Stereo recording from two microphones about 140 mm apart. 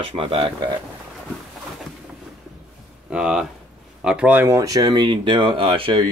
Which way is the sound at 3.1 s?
5° right (ahead or behind).